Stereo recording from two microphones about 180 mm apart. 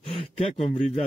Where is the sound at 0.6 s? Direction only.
35° left (ahead or behind).